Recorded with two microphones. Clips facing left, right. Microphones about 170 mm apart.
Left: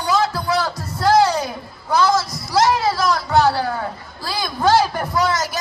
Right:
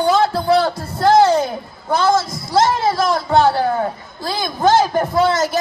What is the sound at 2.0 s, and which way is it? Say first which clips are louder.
Speech: right 1 dB; 50° right (ahead or behind).